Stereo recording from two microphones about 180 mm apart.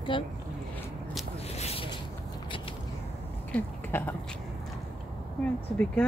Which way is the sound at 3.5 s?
10° left (ahead or behind).